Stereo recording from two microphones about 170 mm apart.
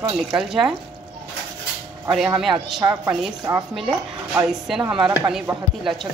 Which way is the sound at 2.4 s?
Centre (ahead or behind).